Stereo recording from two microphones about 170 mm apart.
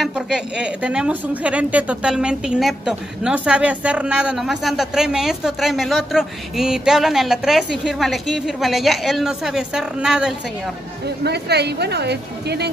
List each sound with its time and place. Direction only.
0.0 s speech: 5° right (ahead or behind)
11.2 s speech: 75° right (ahead or behind)